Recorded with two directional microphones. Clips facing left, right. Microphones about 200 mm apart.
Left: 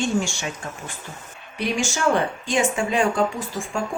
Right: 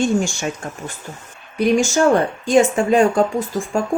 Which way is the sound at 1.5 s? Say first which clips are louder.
Right 9 dB; 40° right (ahead or behind).